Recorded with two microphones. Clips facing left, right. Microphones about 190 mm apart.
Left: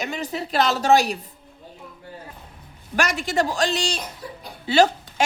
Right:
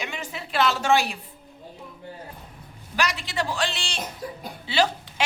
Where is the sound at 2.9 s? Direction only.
50° left (ahead or behind).